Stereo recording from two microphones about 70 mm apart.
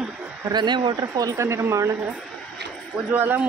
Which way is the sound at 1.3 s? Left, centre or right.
Right.